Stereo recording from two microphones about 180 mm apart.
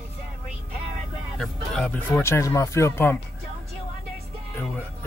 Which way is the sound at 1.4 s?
5° left (ahead or behind).